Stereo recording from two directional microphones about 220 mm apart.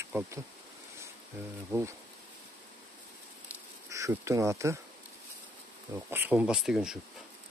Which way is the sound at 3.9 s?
15° right (ahead or behind).